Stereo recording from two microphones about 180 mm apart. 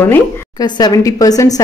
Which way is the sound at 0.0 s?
15° left (ahead or behind).